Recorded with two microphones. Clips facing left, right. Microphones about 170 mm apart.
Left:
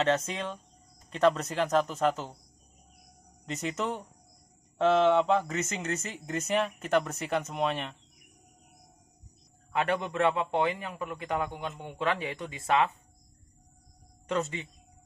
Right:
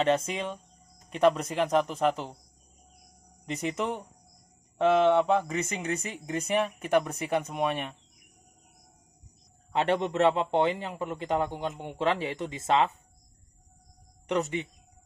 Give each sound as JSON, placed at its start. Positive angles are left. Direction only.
{"t": 0.3, "sound": "speech", "side_deg": -10}
{"t": 3.7, "sound": "speech", "side_deg": -10}
{"t": 9.7, "sound": "a man's voice", "side_deg": -25}
{"t": 14.2, "sound": "speech", "side_deg": -20}